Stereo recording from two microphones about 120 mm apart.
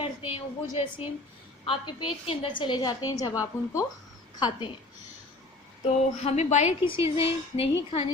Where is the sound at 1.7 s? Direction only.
45° left (ahead or behind); by 3.4 s 30° left (ahead or behind).